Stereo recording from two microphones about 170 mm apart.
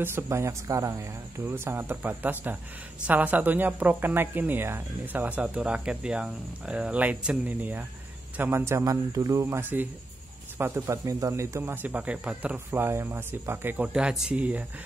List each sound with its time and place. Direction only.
0.0 s speech: 15° right (ahead or behind)